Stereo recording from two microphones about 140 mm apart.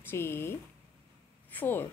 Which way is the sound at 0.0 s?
15° left (ahead or behind).